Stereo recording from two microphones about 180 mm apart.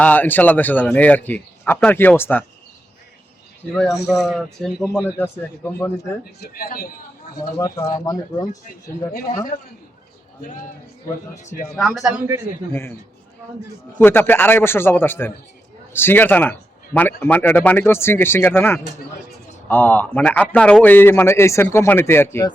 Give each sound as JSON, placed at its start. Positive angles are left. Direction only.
{"t": 0.0, "sound": "a man's voice", "side_deg": 10}
{"t": 3.8, "sound": "a man's voice", "side_deg": -5}
{"t": 6.4, "sound": "speech", "side_deg": 55}
{"t": 7.6, "sound": "speech", "side_deg": 20}
{"t": 9.1, "sound": "a man's voice", "side_deg": 50}
{"t": 11.8, "sound": "a man's voice", "side_deg": 0}
{"t": 14.0, "sound": "a man's voice", "side_deg": 10}